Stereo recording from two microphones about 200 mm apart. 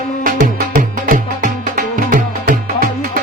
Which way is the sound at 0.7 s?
45° right (ahead or behind).